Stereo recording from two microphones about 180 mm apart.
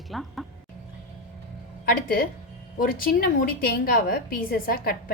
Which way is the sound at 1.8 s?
55° left (ahead or behind).